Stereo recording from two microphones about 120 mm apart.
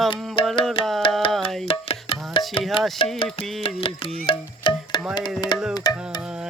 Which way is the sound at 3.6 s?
50° left (ahead or behind).